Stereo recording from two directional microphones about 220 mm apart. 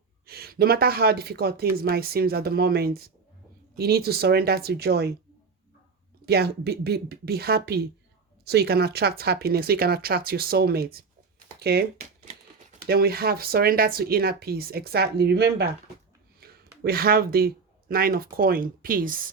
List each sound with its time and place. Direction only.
0.3 s speech: 45° right (ahead or behind)
6.2 s speech: 45° right (ahead or behind)